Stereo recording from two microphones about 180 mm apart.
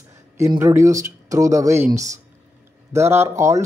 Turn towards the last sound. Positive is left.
turn(degrees=-15)  # may be behind; listen again after turning